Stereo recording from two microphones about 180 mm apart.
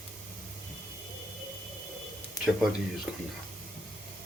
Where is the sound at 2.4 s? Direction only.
20° left (ahead or behind).